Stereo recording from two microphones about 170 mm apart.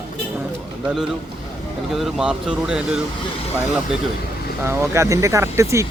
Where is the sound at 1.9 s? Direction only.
Centre (ahead or behind).